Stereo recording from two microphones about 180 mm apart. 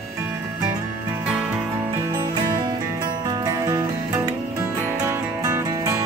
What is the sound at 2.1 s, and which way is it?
Music, 20° right (ahead or behind).